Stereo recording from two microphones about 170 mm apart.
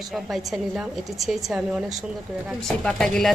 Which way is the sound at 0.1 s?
Centre (ahead or behind).